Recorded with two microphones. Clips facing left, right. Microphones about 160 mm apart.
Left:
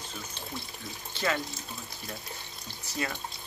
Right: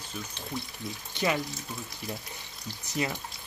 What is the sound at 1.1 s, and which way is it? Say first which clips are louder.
Speech: right 2 dB; 15° right (ahead or behind).